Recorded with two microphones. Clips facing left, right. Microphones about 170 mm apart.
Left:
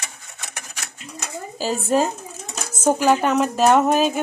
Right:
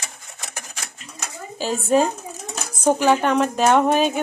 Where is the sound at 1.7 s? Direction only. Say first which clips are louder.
Right 2 dB; centre (ahead or behind).